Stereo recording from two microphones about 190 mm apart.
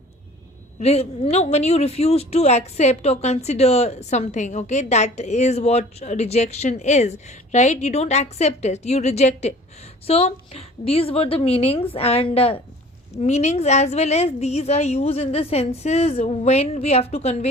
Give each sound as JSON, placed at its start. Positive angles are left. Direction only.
{"t": 0.8, "sound": "a woman's voice", "side_deg": 35}